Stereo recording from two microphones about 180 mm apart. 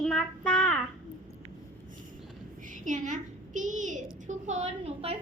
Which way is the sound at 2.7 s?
45° right (ahead or behind).